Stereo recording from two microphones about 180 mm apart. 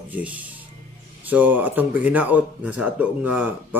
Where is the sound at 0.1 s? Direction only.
10° right (ahead or behind).